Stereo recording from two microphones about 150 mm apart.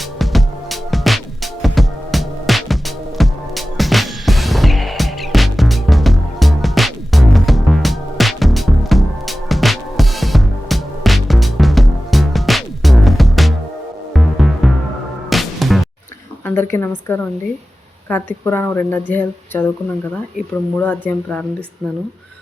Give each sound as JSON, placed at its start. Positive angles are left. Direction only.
{"t": 0.2, "sound": "music", "side_deg": 0}
{"t": 16.6, "sound": "a woman's voice", "side_deg": 15}
{"t": 18.1, "sound": "a woman's voice", "side_deg": 15}
{"t": 20.7, "sound": "a woman's voice", "side_deg": 10}